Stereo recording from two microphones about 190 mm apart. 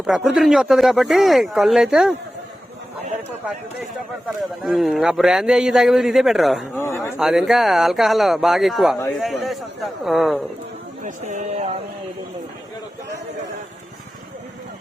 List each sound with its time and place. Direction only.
0.0 s speech: centre (ahead or behind)
4.6 s speech: centre (ahead or behind)
6.7 s speech: 15° left (ahead or behind)
7.2 s speech: centre (ahead or behind)
11.0 s speech: 40° right (ahead or behind)